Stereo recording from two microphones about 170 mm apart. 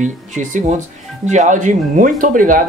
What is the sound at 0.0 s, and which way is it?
Speech, 50° right (ahead or behind).